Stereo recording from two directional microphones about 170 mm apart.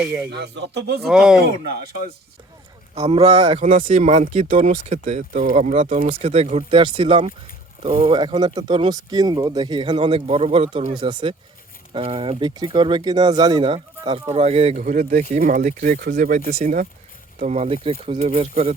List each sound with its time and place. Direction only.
0.0 s speech: 10° right (ahead or behind)
0.3 s speech: 80° right
1.0 s speech: 5° right (ahead or behind)
1.4 s speech: 70° right (ahead or behind)
2.9 s speech: 35° right (ahead or behind)
6.1 s speech: 35° right (ahead or behind)